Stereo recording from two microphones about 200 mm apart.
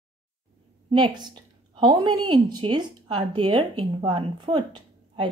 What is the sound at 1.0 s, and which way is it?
Speech, 20° right (ahead or behind).